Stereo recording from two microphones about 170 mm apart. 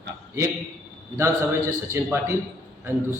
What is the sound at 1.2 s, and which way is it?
A man's voice, 15° right (ahead or behind).